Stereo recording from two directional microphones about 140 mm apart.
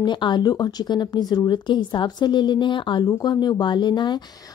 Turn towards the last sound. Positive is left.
turn(degrees=30)  # may be behind; listen again after turning